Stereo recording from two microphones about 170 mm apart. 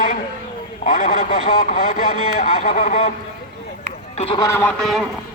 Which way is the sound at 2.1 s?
35° left (ahead or behind).